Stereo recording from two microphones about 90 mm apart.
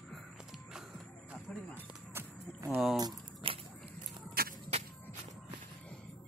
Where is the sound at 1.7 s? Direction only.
25° right (ahead or behind).